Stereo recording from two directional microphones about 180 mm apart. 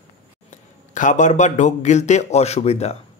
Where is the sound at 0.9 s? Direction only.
45° left (ahead or behind).